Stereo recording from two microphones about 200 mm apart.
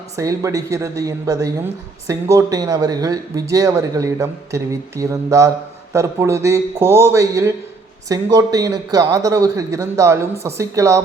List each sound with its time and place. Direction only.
0.2 s speech: 15° right (ahead or behind)